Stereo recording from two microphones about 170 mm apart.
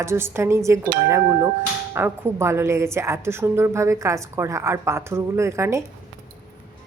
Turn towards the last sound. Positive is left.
turn(degrees=-15)  # may be behind; listen again after turning